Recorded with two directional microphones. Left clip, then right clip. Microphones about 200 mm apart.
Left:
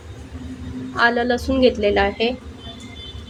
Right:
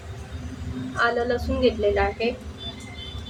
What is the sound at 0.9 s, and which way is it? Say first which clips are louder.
A woman's voice: left 5 dB; 45° left (ahead or behind).